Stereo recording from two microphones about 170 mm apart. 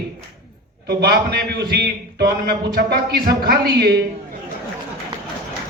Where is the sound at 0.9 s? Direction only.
70° right (ahead or behind).